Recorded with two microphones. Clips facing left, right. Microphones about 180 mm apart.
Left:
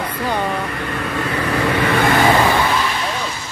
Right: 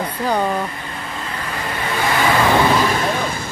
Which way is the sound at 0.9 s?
75° left (ahead or behind).